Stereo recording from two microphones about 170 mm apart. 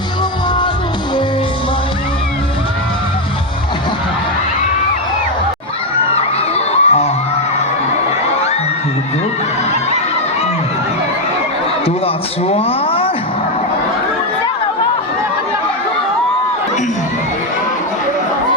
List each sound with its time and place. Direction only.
6.5 s crowd: 40° left (ahead or behind)
12.0 s speech: 35° left (ahead or behind)